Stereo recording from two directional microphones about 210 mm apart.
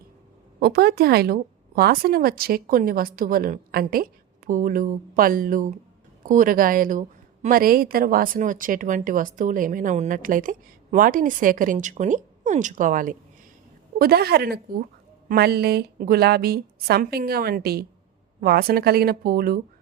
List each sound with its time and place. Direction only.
0.6 s a woman's voice: 50° right (ahead or behind)